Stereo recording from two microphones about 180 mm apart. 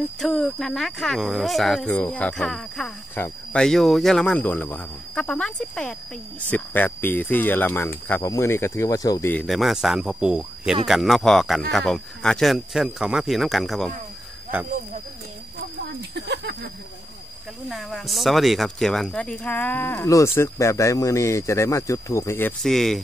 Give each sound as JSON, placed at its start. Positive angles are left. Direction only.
{"t": 0.2, "sound": "speech", "side_deg": 0}
{"t": 9.3, "sound": "speech", "side_deg": 5}
{"t": 15.6, "sound": "a sound", "side_deg": -70}
{"t": 17.6, "sound": "speech", "side_deg": 0}
{"t": 22.6, "sound": "speech", "side_deg": 0}